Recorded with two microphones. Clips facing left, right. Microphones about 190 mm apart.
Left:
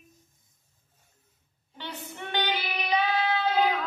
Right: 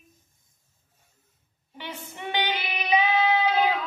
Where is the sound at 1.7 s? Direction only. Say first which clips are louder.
Right 1 dB; 15° right (ahead or behind).